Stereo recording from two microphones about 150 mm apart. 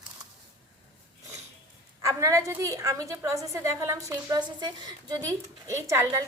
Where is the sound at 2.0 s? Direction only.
20° right (ahead or behind).